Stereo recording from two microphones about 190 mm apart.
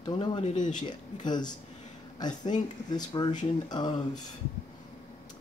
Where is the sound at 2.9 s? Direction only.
20° left (ahead or behind).